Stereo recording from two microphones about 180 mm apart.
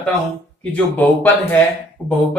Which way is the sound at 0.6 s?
10° left (ahead or behind).